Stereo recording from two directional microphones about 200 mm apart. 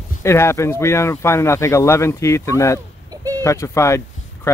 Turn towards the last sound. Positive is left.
turn(degrees=15)  # may be behind; listen again after turning